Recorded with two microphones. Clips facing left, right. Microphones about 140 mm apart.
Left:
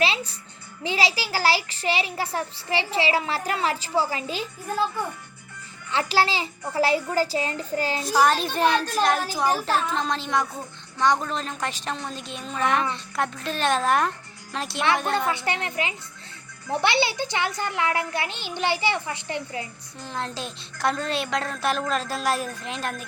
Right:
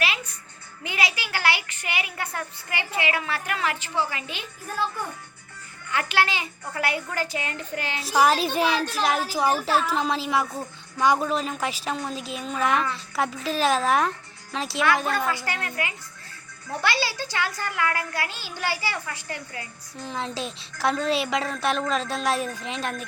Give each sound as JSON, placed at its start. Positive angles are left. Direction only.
{"t": 0.8, "sound": "a child's voice", "side_deg": 30}
{"t": 5.9, "sound": "a child's voice", "side_deg": 30}
{"t": 8.0, "sound": "a woman's voice", "side_deg": -5}
{"t": 15.3, "sound": "a child's voice", "side_deg": 25}
{"t": 20.0, "sound": "a woman's voice", "side_deg": 0}